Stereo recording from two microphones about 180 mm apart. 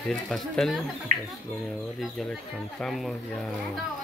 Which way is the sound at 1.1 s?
45° right (ahead or behind).